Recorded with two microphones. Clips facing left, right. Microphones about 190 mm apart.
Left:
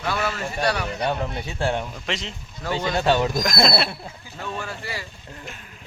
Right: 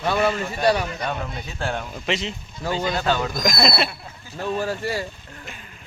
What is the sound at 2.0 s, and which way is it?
Speech, 5° right (ahead or behind).